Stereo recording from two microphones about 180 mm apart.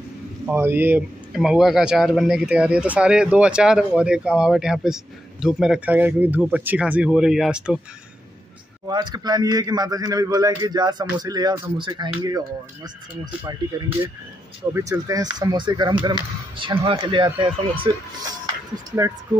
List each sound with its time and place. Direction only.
0.5 s speech: 10° right (ahead or behind)
8.8 s a man's voice: 20° right (ahead or behind)
14.7 s a man's voice: 15° right (ahead or behind)